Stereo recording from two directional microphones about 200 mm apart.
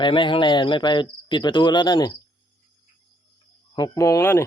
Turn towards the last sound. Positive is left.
turn(degrees=15)  # may be behind; listen again after turning